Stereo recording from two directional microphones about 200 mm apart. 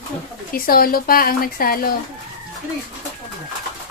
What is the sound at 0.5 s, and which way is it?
A woman's voice, 45° left (ahead or behind).